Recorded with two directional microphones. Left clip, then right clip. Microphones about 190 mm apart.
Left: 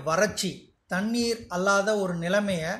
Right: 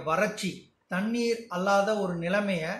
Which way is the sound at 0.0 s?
35° left (ahead or behind).